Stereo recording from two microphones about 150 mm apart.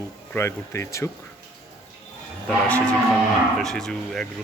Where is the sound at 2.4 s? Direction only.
5° left (ahead or behind).